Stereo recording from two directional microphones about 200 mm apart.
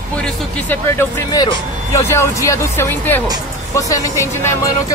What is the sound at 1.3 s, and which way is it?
A man's voice, 20° left (ahead or behind).